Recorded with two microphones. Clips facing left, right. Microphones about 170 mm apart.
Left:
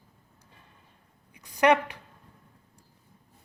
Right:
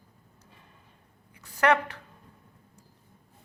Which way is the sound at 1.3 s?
15° left (ahead or behind).